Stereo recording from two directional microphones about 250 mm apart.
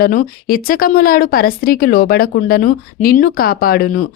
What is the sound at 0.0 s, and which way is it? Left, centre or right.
A woman's voice, left.